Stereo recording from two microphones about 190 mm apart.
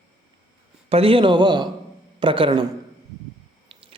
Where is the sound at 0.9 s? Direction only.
30° right (ahead or behind).